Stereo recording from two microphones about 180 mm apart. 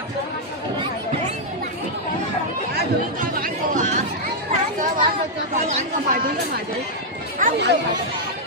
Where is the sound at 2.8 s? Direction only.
50° right (ahead or behind).